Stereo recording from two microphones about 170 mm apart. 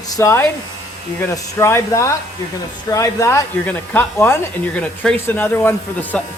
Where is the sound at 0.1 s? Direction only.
15° left (ahead or behind).